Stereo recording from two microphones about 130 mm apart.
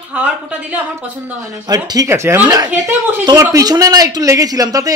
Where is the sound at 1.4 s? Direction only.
25° right (ahead or behind).